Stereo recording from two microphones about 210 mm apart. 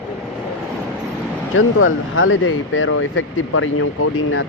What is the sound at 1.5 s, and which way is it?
Speech, 75° left (ahead or behind).